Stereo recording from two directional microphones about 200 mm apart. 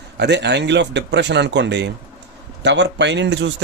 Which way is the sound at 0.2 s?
60° right (ahead or behind).